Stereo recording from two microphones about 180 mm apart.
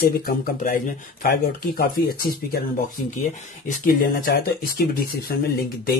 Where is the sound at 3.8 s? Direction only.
55° left (ahead or behind).